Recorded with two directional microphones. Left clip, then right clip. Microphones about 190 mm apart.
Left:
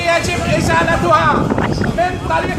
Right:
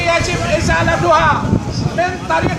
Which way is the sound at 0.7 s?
5° left (ahead or behind).